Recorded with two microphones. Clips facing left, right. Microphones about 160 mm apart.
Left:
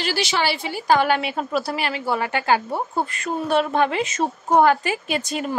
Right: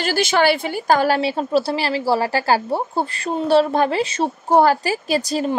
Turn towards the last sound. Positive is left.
turn(degrees=-35)  # may be behind; listen again after turning